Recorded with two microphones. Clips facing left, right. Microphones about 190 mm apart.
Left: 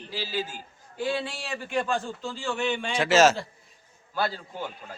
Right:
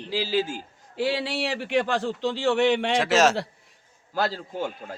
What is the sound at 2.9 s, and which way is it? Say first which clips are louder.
Speech: left 5 dB; centre (ahead or behind).